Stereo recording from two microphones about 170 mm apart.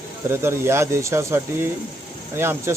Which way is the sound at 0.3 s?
15° right (ahead or behind).